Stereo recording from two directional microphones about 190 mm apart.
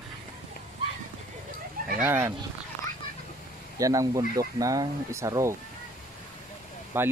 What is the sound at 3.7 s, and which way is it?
Speech, 20° right (ahead or behind).